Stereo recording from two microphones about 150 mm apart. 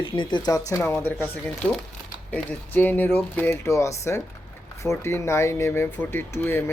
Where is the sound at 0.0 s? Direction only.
35° left (ahead or behind).